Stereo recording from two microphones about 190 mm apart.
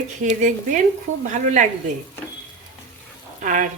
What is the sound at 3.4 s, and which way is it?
Frying, 40° right (ahead or behind).